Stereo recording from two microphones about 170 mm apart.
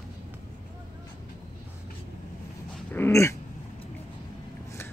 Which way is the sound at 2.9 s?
15° left (ahead or behind).